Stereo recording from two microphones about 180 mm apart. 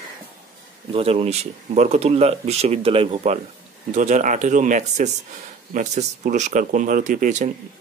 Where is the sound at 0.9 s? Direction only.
35° right (ahead or behind).